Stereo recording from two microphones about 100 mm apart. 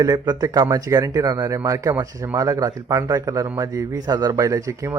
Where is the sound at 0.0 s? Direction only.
35° right (ahead or behind).